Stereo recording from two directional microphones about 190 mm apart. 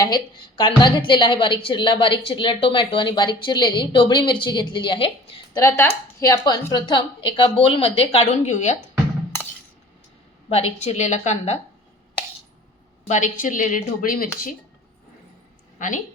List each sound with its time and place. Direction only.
0.0 s a woman's voice: 25° left (ahead or behind)
5.5 s a woman's voice: 15° left (ahead or behind); by 8.7 s 40° left (ahead or behind)
10.8 s speech: 35° left (ahead or behind)
13.1 s speech: 40° left (ahead or behind)
15.8 s speech: 45° left (ahead or behind)